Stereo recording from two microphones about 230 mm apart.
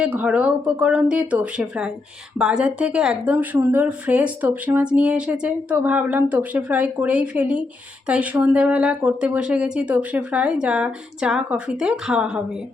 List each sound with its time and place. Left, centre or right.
0.0 s speech: centre